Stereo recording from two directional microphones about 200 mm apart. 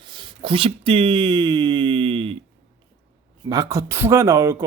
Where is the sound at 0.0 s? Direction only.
25° right (ahead or behind).